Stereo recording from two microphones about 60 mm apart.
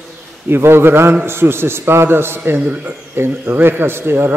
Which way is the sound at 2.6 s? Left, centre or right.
Right.